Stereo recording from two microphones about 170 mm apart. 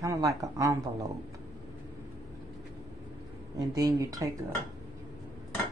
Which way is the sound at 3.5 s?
20° right (ahead or behind).